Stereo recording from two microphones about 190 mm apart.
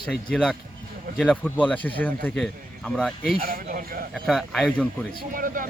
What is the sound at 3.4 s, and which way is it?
Speech, 45° right (ahead or behind).